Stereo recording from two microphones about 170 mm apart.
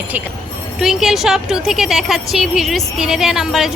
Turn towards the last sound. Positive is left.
turn(degrees=0)  # may be behind; listen again after turning